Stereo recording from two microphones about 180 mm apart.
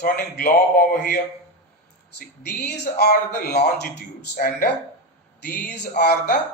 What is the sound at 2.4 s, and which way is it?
A man's voice, 60° left (ahead or behind).